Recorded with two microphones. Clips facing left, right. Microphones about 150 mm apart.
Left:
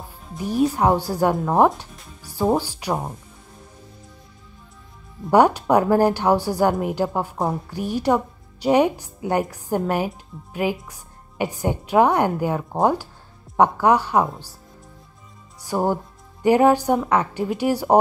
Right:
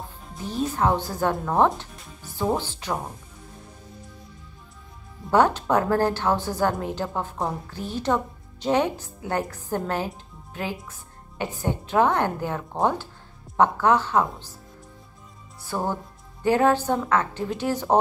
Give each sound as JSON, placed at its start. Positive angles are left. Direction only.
{"t": 0.4, "sound": "a woman's voice", "side_deg": 10}
{"t": 5.3, "sound": "a woman's voice", "side_deg": 10}
{"t": 15.6, "sound": "a woman's voice", "side_deg": 15}